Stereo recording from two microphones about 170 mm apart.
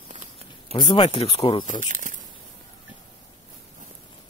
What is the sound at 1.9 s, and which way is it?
Speech, 50° right (ahead or behind).